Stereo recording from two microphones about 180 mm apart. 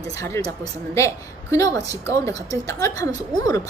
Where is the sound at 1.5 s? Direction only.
20° left (ahead or behind).